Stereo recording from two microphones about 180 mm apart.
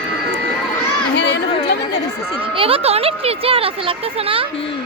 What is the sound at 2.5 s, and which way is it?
Speech, 30° right (ahead or behind).